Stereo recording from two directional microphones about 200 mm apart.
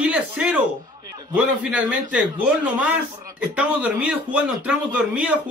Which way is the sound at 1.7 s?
5° right (ahead or behind).